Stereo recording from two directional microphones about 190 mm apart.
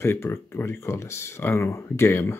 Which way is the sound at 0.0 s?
15° left (ahead or behind).